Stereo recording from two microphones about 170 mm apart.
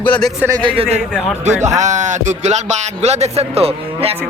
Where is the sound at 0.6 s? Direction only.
35° right (ahead or behind).